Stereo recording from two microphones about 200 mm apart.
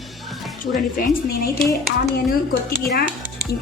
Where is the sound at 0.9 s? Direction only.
45° left (ahead or behind).